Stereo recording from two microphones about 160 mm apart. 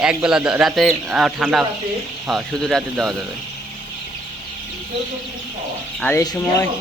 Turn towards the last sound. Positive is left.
turn(degrees=20)  # may be behind; listen again after turning